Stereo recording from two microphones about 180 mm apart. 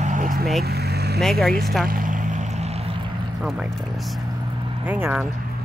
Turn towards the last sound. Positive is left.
turn(degrees=-10)  # may be behind; listen again after turning